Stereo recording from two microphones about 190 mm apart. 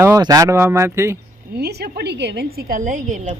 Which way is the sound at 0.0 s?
15° right (ahead or behind).